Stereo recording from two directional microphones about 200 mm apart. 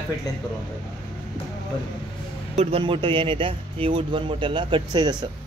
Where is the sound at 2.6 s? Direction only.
30° right (ahead or behind).